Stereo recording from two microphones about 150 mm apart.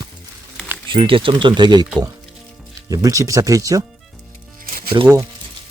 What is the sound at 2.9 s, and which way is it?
Speech, 20° right (ahead or behind).